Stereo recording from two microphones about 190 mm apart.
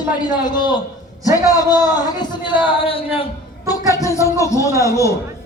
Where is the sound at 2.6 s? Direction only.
30° left (ahead or behind).